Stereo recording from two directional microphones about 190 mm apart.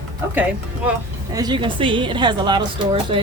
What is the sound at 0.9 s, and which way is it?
A woman's voice, 20° right (ahead or behind).